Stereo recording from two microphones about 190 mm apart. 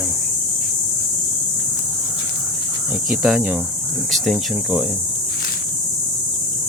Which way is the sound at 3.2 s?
5° right (ahead or behind).